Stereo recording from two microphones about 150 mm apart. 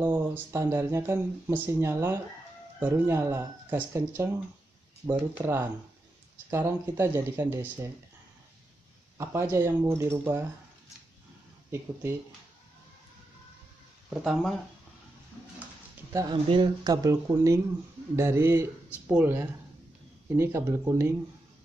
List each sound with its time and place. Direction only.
0.0 s speech: 15° right (ahead or behind)
5.3 s speech: 15° right (ahead or behind)
9.2 s speech: 20° right (ahead or behind)
11.7 s speech: 15° right (ahead or behind)
14.1 s speech: 5° right (ahead or behind)
16.1 s speech: 20° right (ahead or behind)
16.4 s speech: 30° right (ahead or behind)